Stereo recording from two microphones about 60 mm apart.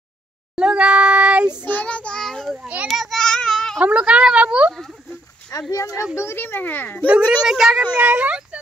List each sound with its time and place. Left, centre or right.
0.6 s child singing: centre
1.7 s child singing: left
2.1 s a sound: centre
3.0 s child singing: centre
3.8 s speech: centre
5.7 s a child's voice: left
6.1 s a child's voice: left
7.1 s speech: centre